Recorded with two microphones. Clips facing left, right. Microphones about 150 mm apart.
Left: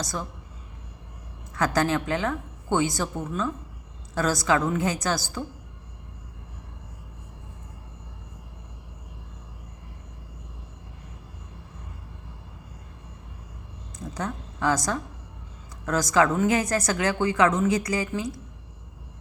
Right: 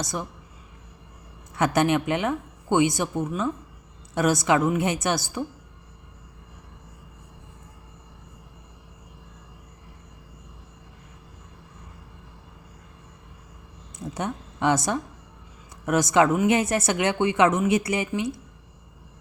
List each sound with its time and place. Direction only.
0.0 s speech: 20° right (ahead or behind)
1.5 s speech: 20° right (ahead or behind)
14.1 s a woman's voice: 25° right (ahead or behind)